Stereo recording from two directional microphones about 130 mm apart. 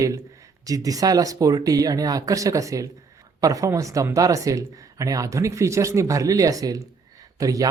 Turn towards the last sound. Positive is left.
turn(degrees=-25)  # may be behind; listen again after turning